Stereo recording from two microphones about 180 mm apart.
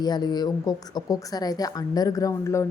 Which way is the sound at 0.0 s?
25° left (ahead or behind).